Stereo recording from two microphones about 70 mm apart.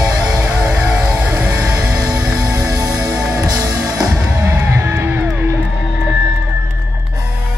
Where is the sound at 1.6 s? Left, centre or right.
Right.